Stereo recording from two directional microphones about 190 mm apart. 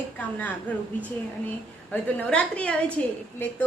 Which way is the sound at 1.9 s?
5° left (ahead or behind).